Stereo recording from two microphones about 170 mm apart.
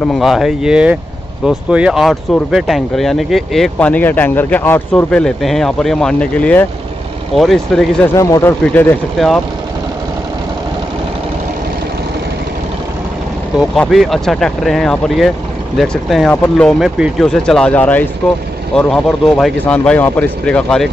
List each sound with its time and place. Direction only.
0.0 s speech: centre (ahead or behind)
8.2 s speech: 15° left (ahead or behind)
9.2 s speech: centre (ahead or behind)
13.6 s speech: centre (ahead or behind)